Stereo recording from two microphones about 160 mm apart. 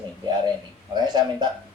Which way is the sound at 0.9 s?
25° right (ahead or behind).